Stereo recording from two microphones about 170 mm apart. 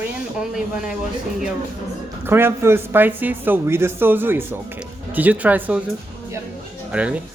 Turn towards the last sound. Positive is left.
turn(degrees=-5)  # may be behind; listen again after turning